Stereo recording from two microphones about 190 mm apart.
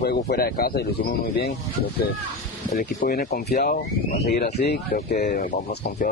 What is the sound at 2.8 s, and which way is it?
Speech, 50° left (ahead or behind).